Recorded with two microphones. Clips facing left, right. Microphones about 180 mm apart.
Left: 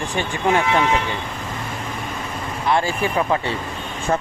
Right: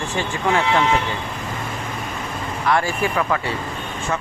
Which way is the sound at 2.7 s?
25° left (ahead or behind).